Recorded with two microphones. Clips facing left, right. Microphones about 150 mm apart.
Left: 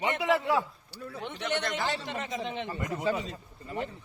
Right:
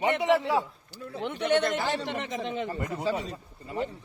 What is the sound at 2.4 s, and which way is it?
Speech, 45° right (ahead or behind).